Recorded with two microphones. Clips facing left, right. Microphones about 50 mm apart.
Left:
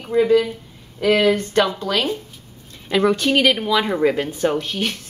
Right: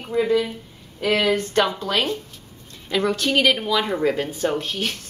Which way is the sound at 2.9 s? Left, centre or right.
Centre.